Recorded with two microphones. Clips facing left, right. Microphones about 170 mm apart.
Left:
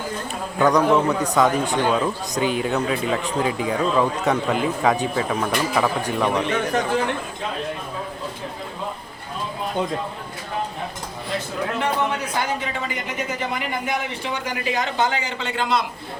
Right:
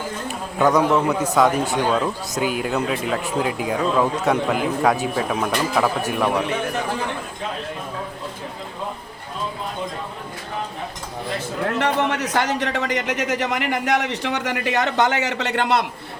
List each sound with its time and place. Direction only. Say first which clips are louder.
0.6 s a man's voice: even; 5° right (ahead or behind)
11.8 s speech: right 2 dB; 80° right